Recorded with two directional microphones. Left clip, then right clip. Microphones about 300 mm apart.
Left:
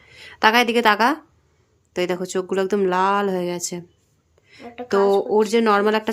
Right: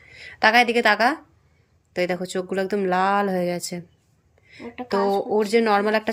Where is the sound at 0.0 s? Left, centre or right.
Centre.